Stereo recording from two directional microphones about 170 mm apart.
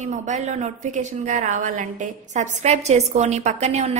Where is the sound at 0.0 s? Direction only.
45° right (ahead or behind).